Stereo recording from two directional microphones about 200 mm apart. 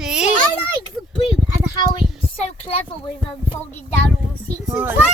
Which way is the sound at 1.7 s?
25° left (ahead or behind).